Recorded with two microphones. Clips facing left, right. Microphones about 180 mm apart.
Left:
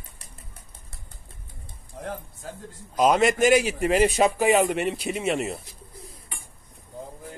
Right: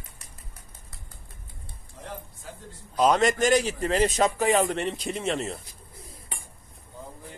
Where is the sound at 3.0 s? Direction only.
10° left (ahead or behind).